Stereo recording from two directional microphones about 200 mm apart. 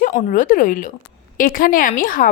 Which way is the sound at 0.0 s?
40° left (ahead or behind).